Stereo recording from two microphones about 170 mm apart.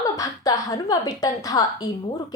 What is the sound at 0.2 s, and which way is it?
A woman's voice, 20° left (ahead or behind).